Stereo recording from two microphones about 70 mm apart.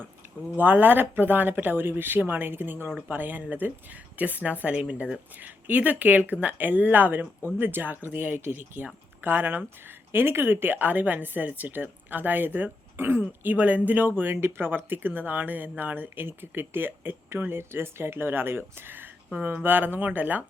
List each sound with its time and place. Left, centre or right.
0.5 s speech: right